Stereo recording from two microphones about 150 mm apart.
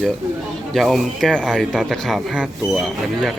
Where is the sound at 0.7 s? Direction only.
Centre (ahead or behind).